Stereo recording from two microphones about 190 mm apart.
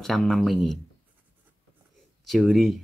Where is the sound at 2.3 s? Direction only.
Centre (ahead or behind).